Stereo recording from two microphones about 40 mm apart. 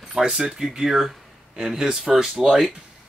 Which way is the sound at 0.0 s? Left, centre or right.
Centre.